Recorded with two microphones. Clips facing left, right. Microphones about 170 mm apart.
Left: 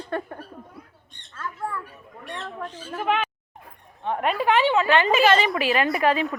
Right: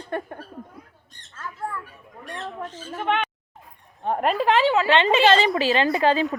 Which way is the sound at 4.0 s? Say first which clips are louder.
Right 2 dB; 40° right (ahead or behind).